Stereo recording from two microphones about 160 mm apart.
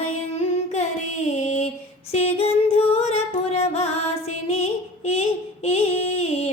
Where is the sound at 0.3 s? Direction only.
45° left (ahead or behind).